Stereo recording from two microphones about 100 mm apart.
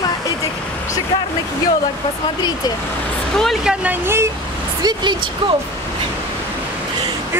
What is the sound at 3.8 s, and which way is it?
Speech, 20° right (ahead or behind).